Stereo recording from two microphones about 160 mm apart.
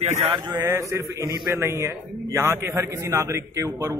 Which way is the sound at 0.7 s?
20° right (ahead or behind).